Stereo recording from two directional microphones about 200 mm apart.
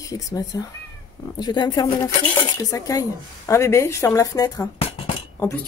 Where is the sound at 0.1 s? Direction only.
20° left (ahead or behind).